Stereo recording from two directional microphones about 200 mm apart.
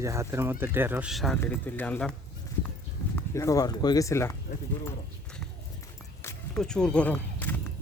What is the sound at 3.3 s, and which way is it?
Speech, 15° left (ahead or behind).